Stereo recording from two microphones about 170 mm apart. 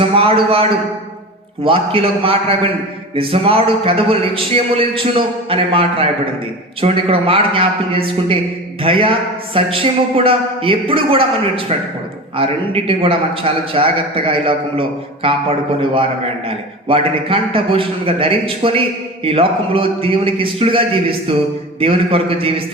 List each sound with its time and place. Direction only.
0.0 s a man's voice: 35° right (ahead or behind)